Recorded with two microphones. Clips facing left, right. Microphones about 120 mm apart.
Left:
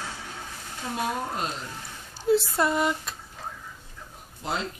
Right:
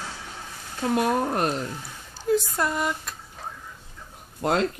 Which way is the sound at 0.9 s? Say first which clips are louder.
Right 7 dB; 65° right (ahead or behind).